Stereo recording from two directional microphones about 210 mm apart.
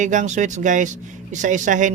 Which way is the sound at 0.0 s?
35° right (ahead or behind).